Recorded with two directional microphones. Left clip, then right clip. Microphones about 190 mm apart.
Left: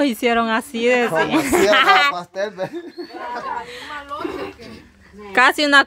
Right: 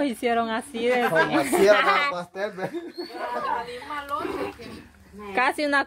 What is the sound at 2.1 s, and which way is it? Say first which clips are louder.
Speech: left 5 dB; 45° left (ahead or behind).